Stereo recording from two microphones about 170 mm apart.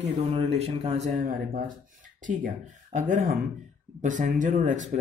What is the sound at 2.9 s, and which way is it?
Speech, 50° right (ahead or behind).